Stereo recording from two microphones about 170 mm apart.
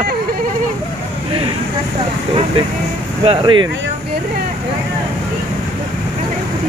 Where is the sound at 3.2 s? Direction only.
30° right (ahead or behind).